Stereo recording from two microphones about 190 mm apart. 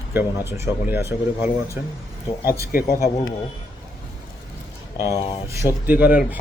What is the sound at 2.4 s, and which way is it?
Speech, 55° left (ahead or behind).